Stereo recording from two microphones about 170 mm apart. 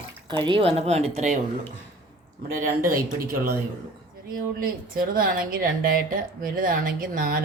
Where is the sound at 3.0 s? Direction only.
60° right (ahead or behind).